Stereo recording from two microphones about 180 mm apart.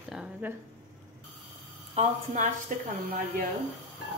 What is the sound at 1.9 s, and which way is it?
Speech, 45° right (ahead or behind).